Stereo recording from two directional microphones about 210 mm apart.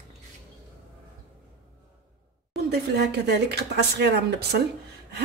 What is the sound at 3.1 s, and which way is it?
A woman's voice, 55° right (ahead or behind).